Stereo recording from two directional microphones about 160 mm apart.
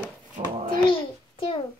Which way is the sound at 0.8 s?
35° left (ahead or behind).